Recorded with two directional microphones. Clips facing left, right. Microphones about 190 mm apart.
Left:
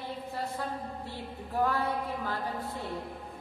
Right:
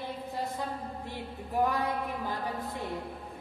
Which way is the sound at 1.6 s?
15° right (ahead or behind).